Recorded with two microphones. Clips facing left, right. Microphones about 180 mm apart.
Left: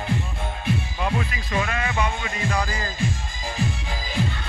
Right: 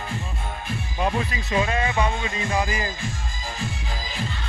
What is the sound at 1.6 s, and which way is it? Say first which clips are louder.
Music: right 5 dB; 25° right (ahead or behind).